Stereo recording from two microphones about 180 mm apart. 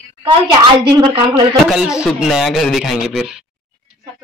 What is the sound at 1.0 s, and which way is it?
Speech, 30° right (ahead or behind).